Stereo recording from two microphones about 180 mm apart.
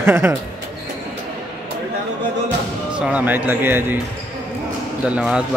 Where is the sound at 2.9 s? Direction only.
5° right (ahead or behind).